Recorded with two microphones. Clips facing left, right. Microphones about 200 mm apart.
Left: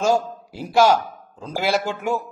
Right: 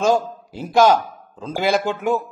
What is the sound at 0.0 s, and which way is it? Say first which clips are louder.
A man's voice: right 2 dB; 10° left (ahead or behind).